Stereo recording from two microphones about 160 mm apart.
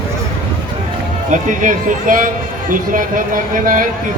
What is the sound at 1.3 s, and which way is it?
Speech, 55° right (ahead or behind).